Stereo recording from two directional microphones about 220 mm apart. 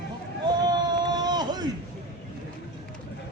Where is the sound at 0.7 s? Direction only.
20° right (ahead or behind).